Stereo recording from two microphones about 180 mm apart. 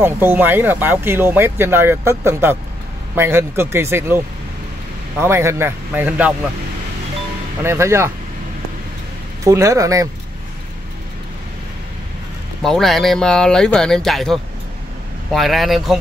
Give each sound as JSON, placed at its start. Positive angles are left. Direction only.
{"t": 0.0, "sound": "speech", "side_deg": -10}
{"t": 5.2, "sound": "speech", "side_deg": -15}
{"t": 7.6, "sound": "speech", "side_deg": -15}
{"t": 9.4, "sound": "speech", "side_deg": -15}
{"t": 12.6, "sound": "speech", "side_deg": 0}